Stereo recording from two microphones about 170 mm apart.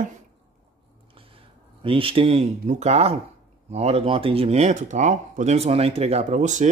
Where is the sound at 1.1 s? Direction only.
30° right (ahead or behind).